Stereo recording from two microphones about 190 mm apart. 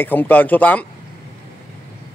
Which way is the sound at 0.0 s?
10° left (ahead or behind).